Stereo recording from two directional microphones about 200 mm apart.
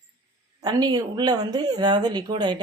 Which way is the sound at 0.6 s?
20° right (ahead or behind).